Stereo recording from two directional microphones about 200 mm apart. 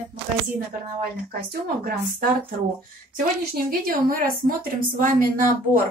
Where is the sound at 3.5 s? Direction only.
45° right (ahead or behind).